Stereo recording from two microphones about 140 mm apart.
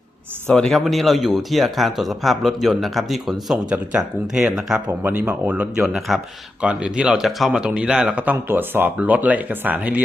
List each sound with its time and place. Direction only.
0.4 s speech: 5° left (ahead or behind); by 10.0 s 10° right (ahead or behind)